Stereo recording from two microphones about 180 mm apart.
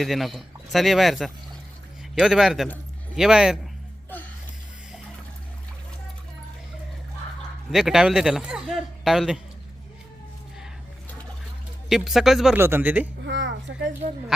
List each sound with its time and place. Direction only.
0.0 s speech: centre (ahead or behind)
7.7 s speech: centre (ahead or behind)
11.9 s speech: centre (ahead or behind)
12.5 s speech: 10° right (ahead or behind)
13.2 s a sound: 90° right